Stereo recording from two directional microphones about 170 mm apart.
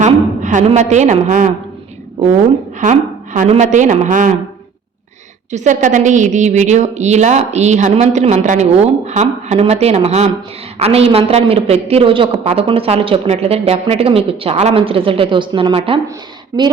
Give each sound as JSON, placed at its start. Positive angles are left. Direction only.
{"t": 0.0, "sound": "a woman's voice", "side_deg": -45}
{"t": 2.8, "sound": "a woman's voice", "side_deg": -50}
{"t": 5.5, "sound": "a woman's voice", "side_deg": -45}